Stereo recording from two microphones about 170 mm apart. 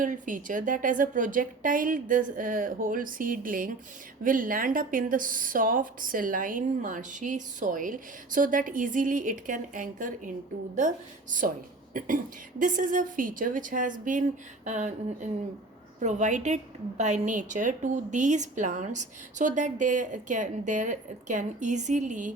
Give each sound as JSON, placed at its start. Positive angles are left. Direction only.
{"t": 0.0, "sound": "speech", "side_deg": -50}